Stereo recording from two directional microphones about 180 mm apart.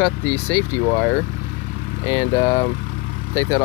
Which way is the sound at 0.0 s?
10° left (ahead or behind).